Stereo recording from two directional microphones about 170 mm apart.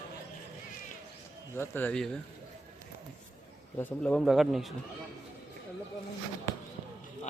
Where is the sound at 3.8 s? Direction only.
10° left (ahead or behind).